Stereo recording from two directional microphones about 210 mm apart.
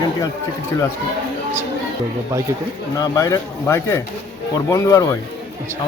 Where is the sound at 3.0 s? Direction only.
15° left (ahead or behind).